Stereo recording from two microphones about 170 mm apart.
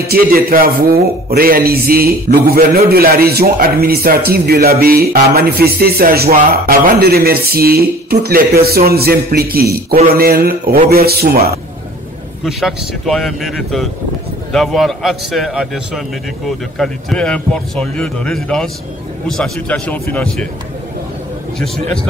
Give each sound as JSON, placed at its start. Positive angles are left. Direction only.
{"t": 0.1, "sound": "a man's voice", "side_deg": -60}
{"t": 12.4, "sound": "speech", "side_deg": 0}